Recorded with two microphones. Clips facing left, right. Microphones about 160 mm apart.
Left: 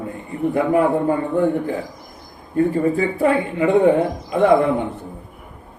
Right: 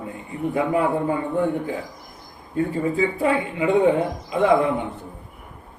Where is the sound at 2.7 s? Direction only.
50° left (ahead or behind).